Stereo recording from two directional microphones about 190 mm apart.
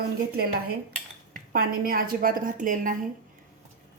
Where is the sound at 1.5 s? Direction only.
50° right (ahead or behind).